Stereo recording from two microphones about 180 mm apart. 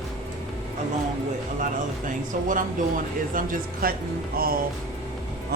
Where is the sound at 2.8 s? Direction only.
45° right (ahead or behind).